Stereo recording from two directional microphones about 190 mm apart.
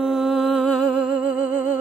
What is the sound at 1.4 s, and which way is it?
Music, 45° left (ahead or behind).